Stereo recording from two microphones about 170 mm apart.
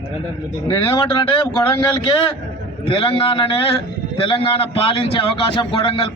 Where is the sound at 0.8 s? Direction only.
30° left (ahead or behind).